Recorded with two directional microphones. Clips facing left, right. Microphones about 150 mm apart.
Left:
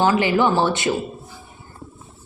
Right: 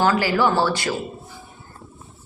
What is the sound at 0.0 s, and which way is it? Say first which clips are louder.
Speech: left 1 dB; 20° left (ahead or behind).